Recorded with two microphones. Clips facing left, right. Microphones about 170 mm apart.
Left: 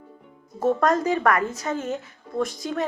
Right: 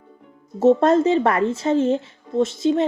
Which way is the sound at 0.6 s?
25° right (ahead or behind).